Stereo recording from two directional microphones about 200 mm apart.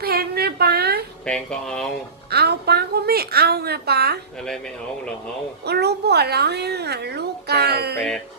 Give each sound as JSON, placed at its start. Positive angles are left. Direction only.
{"t": 0.0, "sound": "a sound", "side_deg": -50}
{"t": 1.2, "sound": "speech", "side_deg": 5}
{"t": 2.3, "sound": "a woman's voice", "side_deg": -55}
{"t": 5.6, "sound": "a woman's voice", "side_deg": -55}
{"t": 7.9, "sound": "speech", "side_deg": 5}